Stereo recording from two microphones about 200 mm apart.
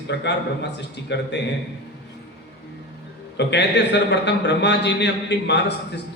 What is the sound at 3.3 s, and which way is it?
A man's voice, 60° left (ahead or behind).